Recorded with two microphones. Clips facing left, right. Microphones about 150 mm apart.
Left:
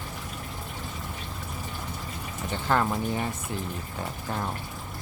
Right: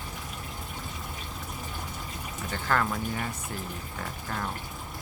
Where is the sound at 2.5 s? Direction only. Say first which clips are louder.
Left 3 dB; 20° left (ahead or behind).